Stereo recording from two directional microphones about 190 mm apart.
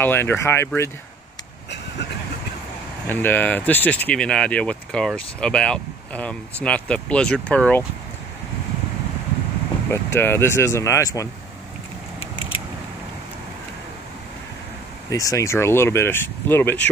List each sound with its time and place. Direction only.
0.0 s speech: 10° left (ahead or behind)
1.7 s vehicle: 65° left (ahead or behind)
3.1 s speech: 10° left (ahead or behind)
9.8 s speech: 15° left (ahead or behind)
12.2 s a sound: 30° left (ahead or behind)
15.0 s speech: 15° left (ahead or behind)